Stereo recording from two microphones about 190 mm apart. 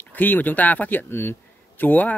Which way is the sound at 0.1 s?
10° left (ahead or behind).